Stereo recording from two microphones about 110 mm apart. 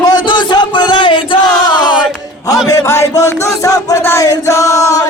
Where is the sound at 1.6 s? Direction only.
40° left (ahead or behind).